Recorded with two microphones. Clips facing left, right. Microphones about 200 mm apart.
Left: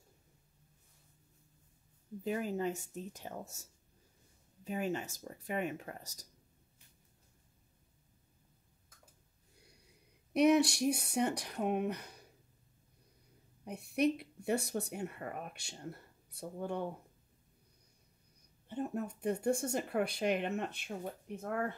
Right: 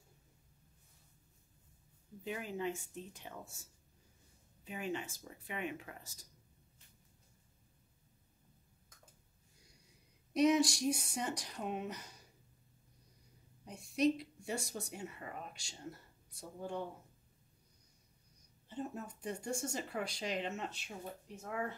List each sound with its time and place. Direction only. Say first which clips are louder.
2.2 s speech: left 5 dB; 40° left (ahead or behind)
4.6 s speech: left 4 dB; 45° left (ahead or behind)
10.3 s speech: left 3 dB; 65° left (ahead or behind)
13.7 s speech: left 1 dB; 60° left (ahead or behind)
18.7 s speech: left 5 dB; 60° left (ahead or behind)